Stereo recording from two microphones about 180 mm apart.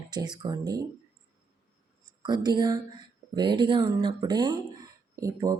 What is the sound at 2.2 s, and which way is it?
Speech, 25° right (ahead or behind).